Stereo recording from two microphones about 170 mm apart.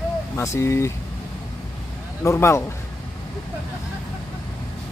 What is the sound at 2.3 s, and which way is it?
Speech, 15° left (ahead or behind).